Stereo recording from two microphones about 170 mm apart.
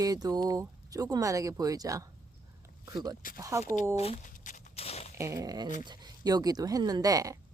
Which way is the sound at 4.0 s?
40° left (ahead or behind).